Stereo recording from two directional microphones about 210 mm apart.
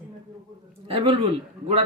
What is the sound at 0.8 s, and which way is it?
Speech, 25° right (ahead or behind).